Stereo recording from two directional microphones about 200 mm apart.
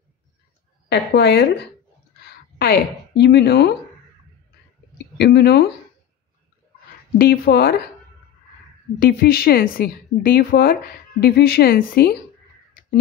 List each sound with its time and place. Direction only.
0.8 s a woman's voice: 55° left (ahead or behind)
2.6 s a woman's voice: 55° left (ahead or behind)
5.1 s a woman's voice: 55° left (ahead or behind)
7.2 s a woman's voice: 50° left (ahead or behind)
9.0 s a woman's voice: 50° left (ahead or behind)